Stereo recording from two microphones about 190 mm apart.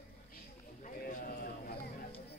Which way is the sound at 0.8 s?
45° left (ahead or behind).